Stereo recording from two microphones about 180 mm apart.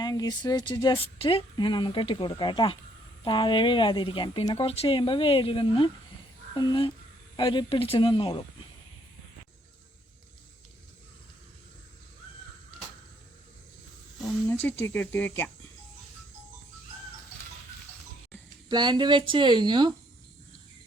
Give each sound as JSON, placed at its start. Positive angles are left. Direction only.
{"t": 0.0, "sound": "speech", "side_deg": 20}
{"t": 14.4, "sound": "speech", "side_deg": 10}
{"t": 18.7, "sound": "speech", "side_deg": -25}